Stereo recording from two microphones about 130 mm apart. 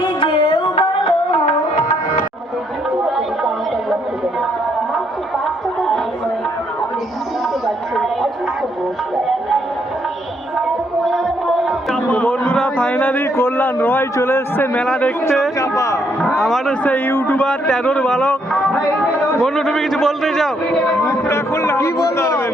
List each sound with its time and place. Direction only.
0.0 s music: 45° left (ahead or behind)
3.2 s a sound: centre (ahead or behind)
11.0 s music: centre (ahead or behind)
12.1 s a sound: 10° left (ahead or behind)
15.5 s a man's voice: 25° left (ahead or behind)
16.2 s a man's voice: centre (ahead or behind)
21.1 s a man's voice: 20° left (ahead or behind)